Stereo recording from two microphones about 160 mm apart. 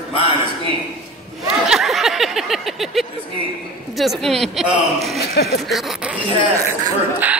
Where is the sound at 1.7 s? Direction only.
Centre (ahead or behind).